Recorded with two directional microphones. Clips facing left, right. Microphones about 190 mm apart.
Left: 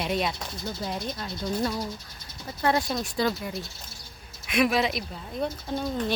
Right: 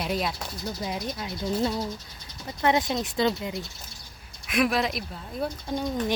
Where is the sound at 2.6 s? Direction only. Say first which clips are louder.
Right 1 dB; 20° right (ahead or behind).